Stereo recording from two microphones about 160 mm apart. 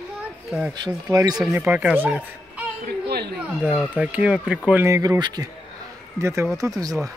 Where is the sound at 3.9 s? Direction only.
5° right (ahead or behind).